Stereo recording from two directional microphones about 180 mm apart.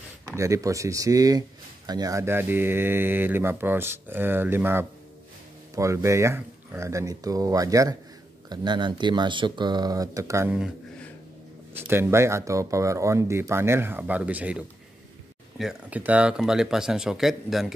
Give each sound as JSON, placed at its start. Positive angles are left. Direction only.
{"t": 0.4, "sound": "speech", "side_deg": -15}
{"t": 11.9, "sound": "speech", "side_deg": -15}